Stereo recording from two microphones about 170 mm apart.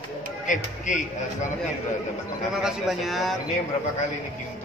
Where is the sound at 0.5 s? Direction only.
45° left (ahead or behind).